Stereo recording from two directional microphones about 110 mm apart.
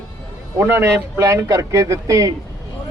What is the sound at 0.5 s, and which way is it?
A man's voice, 25° right (ahead or behind).